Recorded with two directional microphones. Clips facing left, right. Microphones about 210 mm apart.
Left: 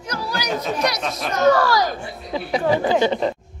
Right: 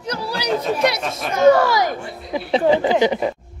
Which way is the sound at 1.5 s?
20° right (ahead or behind).